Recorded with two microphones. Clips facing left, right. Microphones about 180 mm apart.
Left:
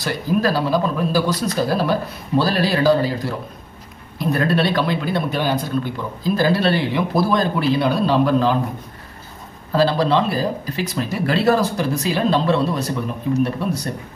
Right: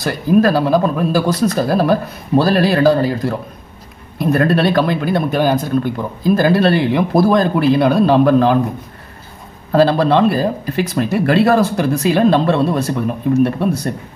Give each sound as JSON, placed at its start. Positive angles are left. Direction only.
{"t": 0.0, "sound": "speech", "side_deg": -50}
{"t": 9.7, "sound": "speech", "side_deg": -50}